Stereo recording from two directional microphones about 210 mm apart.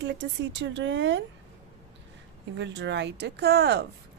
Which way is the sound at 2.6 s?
60° right (ahead or behind).